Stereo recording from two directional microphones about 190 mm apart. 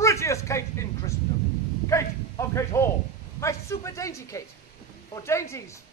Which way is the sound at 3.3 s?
15° left (ahead or behind).